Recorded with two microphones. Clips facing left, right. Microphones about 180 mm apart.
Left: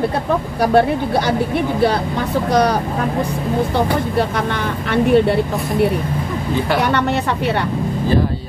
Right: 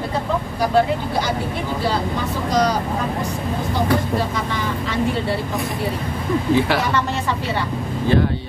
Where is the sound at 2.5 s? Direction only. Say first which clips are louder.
Left 2 dB; 60° left (ahead or behind).